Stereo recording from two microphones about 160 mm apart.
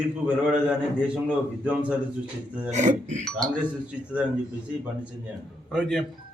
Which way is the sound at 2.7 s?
50° right (ahead or behind).